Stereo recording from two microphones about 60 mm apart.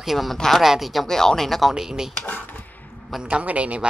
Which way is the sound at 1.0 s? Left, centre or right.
Centre.